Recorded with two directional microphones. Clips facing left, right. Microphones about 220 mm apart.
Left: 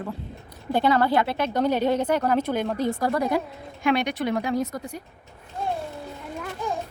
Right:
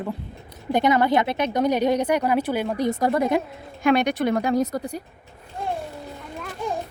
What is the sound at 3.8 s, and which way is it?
Speech, 45° right (ahead or behind).